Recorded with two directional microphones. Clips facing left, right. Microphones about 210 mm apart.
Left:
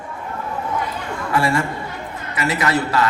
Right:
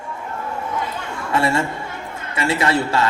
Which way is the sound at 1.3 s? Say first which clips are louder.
Even; 25° right (ahead or behind).